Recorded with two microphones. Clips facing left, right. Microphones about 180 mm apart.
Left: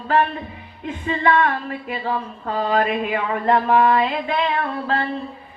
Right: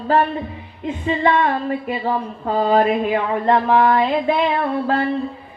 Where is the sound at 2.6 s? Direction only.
30° right (ahead or behind).